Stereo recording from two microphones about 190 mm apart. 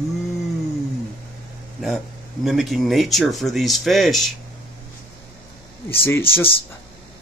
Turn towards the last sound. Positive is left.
turn(degrees=10)  # may be behind; listen again after turning